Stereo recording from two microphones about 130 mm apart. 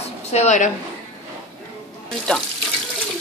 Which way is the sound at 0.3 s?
60° left (ahead or behind).